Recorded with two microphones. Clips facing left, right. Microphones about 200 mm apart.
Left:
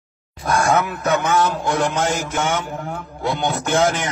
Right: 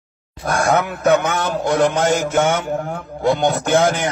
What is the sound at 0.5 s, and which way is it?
Speech, 55° right (ahead or behind).